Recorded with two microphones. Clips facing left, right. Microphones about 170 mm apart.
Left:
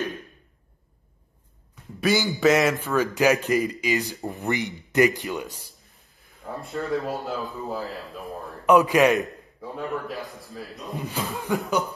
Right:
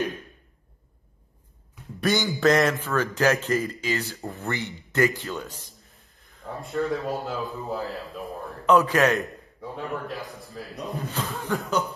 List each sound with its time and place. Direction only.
2.0 s a man's voice: 5° left (ahead or behind)
6.4 s a man's voice: centre (ahead or behind)
8.6 s a man's voice: 15° left (ahead or behind)
9.2 s a man's voice: centre (ahead or behind)
11.0 s a man's voice: 15° left (ahead or behind)